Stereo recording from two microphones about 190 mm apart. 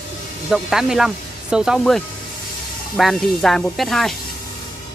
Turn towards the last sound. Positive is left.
turn(degrees=0)  # may be behind; listen again after turning